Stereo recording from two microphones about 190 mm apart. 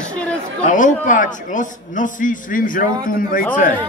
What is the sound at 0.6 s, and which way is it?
A man's voice, 40° left (ahead or behind).